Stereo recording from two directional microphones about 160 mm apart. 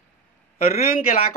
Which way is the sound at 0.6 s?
65° left (ahead or behind).